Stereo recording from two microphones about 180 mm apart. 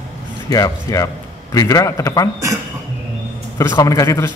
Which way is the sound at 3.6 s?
15° left (ahead or behind).